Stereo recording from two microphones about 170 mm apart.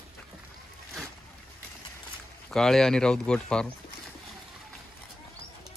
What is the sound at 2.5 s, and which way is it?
Speech, 5° left (ahead or behind).